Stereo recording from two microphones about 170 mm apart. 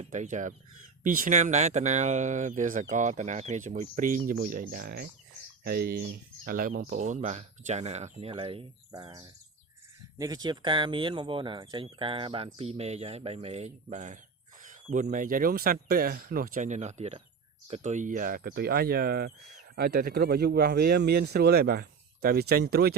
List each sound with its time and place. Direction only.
0.1 s speech: 45° right (ahead or behind)
14.6 s a sound: 50° right (ahead or behind)
15.1 s speech: 55° right (ahead or behind)